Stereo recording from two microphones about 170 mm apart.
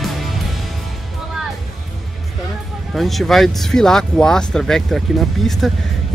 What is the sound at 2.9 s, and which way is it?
Speech, centre (ahead or behind).